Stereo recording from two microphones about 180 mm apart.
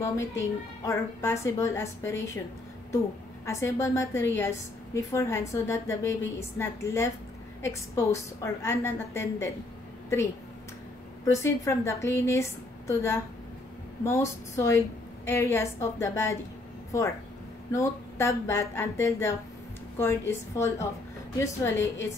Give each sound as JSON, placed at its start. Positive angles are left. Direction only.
{"t": 0.0, "sound": "a woman's voice", "side_deg": 15}
{"t": 3.4, "sound": "a woman's voice", "side_deg": 15}
{"t": 11.3, "sound": "a woman's voice", "side_deg": 15}